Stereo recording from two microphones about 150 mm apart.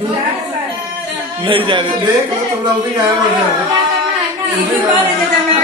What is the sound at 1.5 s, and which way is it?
Speech, 35° right (ahead or behind).